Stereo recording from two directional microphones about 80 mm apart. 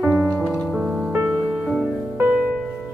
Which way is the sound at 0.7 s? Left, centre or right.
Centre.